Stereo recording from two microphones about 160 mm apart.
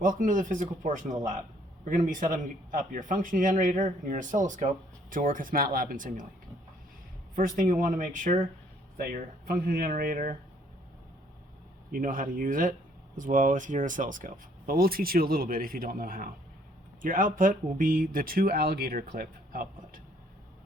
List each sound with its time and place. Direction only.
0.0 s speech: 55° right (ahead or behind)
2.0 s speech: 55° right (ahead or behind)
7.3 s speech: 60° right (ahead or behind)
9.5 s speech: 65° right (ahead or behind)
11.9 s speech: 60° right (ahead or behind)